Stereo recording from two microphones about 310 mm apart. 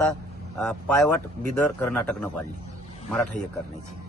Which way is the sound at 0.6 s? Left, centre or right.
Centre.